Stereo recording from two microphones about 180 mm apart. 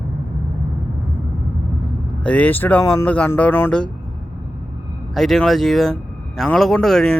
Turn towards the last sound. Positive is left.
turn(degrees=5)  # may be behind; listen again after turning